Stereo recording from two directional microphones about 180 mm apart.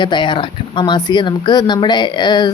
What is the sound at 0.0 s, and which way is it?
Speech, 25° left (ahead or behind).